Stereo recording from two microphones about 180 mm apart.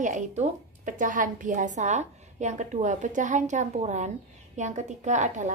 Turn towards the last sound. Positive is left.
turn(degrees=-40)  # may be behind; listen again after turning